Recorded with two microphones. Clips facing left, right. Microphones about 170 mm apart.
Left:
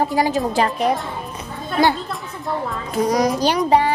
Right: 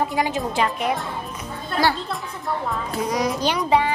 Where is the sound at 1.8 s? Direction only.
25° left (ahead or behind).